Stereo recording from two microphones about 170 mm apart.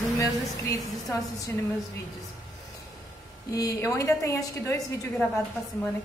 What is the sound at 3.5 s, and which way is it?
A woman's voice, 20° left (ahead or behind).